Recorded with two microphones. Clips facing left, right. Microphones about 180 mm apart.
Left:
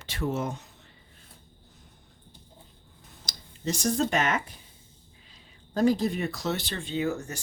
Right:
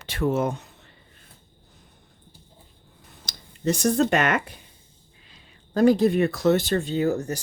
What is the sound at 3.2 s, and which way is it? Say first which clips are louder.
Speech: right 7 dB; 60° right (ahead or behind).